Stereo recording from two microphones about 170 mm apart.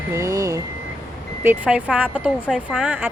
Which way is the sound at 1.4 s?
5° right (ahead or behind).